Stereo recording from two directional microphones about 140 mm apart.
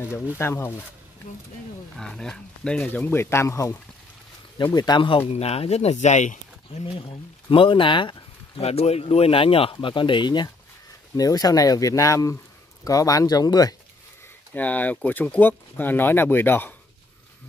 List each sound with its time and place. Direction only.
0.4 s speech: 20° left (ahead or behind)
2.0 s speech: 5° left (ahead or behind); by 3.7 s 20° left (ahead or behind)
4.7 s speech: 30° left (ahead or behind)
5.3 s speech: 45° left (ahead or behind)
6.9 s speech: 40° left (ahead or behind)
14.5 s speech: 10° left (ahead or behind)